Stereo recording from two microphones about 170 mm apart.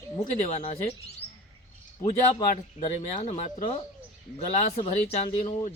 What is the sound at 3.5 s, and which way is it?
Speech, 30° left (ahead or behind).